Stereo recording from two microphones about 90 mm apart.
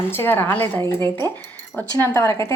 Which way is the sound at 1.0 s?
45° right (ahead or behind).